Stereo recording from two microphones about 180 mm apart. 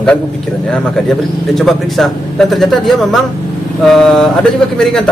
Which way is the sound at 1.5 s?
Centre (ahead or behind).